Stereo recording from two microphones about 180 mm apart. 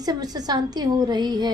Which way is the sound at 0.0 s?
20° right (ahead or behind).